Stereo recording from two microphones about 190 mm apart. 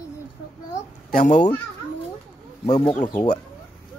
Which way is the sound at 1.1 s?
40° left (ahead or behind).